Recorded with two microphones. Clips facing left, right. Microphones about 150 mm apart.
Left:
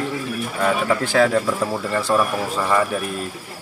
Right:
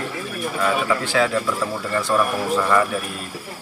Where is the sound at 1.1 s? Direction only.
40° left (ahead or behind).